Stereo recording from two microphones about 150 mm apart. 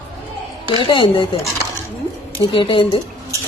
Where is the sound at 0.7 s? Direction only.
35° left (ahead or behind).